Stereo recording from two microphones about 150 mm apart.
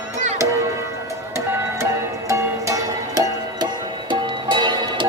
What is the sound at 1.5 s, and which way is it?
Music, 15° right (ahead or behind).